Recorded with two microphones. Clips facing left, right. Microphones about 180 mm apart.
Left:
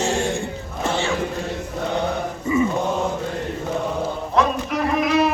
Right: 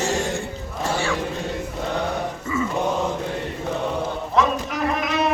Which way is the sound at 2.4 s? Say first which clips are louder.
Left 8 dB; 15° left (ahead or behind).